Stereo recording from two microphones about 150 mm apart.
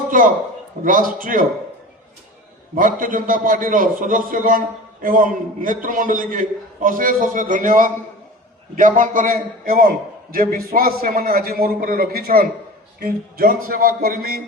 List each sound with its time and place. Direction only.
0.1 s a man's voice: 65° right (ahead or behind)
2.7 s a man's voice: 65° right (ahead or behind); by 12.5 s 90° right
13.0 s a man's voice: 80° right